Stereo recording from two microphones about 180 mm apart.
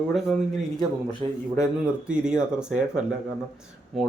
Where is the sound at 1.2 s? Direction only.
30° right (ahead or behind).